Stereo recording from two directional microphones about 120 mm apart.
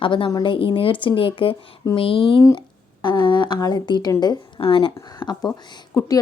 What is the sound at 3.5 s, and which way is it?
Speech, 30° left (ahead or behind).